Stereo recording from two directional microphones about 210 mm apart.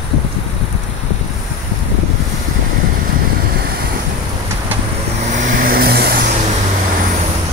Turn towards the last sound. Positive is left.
turn(degrees=-50)  # may be behind; listen again after turning